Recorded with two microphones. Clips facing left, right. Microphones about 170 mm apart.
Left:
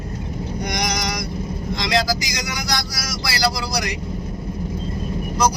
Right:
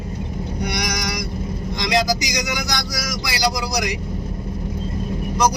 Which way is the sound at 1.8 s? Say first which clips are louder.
Right 2 dB; 15° right (ahead or behind).